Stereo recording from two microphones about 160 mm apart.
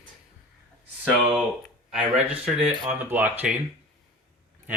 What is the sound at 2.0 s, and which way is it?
Speech, 5° right (ahead or behind).